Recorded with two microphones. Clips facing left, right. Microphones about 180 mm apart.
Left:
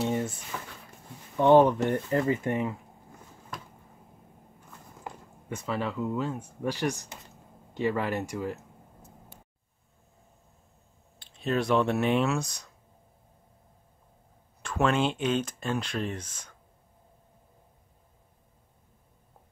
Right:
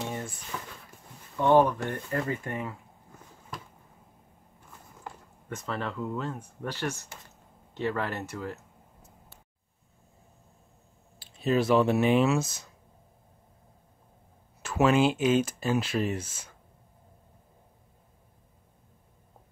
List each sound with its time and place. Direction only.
0.0 s a sound: 20° left (ahead or behind)
0.5 s a sound: centre (ahead or behind)
1.3 s speech: 20° left (ahead or behind)
5.0 s speech: 10° left (ahead or behind)
11.1 s speech: centre (ahead or behind)
14.6 s speech: 5° right (ahead or behind)